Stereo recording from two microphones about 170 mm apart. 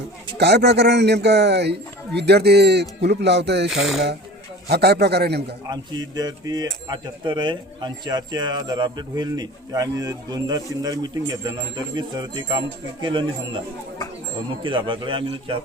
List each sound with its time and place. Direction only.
0.3 s a man's voice: 80° right
4.7 s a man's voice: 70° right (ahead or behind)
5.6 s speech: 25° right (ahead or behind)
14.6 s speech: 30° right (ahead or behind)